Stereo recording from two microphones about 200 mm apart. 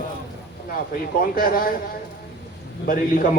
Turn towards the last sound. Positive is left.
turn(degrees=45)  # may be behind; listen again after turning